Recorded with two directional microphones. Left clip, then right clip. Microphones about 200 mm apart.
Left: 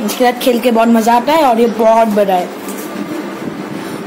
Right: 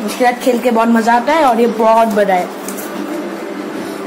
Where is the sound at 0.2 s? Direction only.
20° left (ahead or behind).